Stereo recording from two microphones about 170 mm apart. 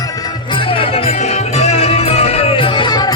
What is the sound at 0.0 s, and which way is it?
Music, 20° left (ahead or behind).